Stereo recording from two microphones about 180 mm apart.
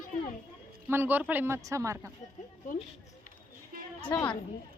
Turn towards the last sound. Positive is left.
turn(degrees=10)  # may be behind; listen again after turning